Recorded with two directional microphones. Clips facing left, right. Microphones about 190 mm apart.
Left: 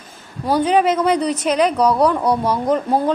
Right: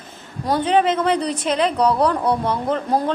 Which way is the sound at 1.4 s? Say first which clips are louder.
Left 3 dB; 30° right (ahead or behind).